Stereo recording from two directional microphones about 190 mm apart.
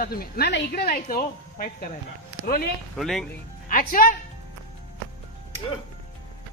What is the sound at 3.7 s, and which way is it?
Speech, 45° left (ahead or behind).